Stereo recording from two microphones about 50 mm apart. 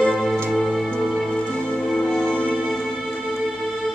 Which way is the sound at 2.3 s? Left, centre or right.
Left.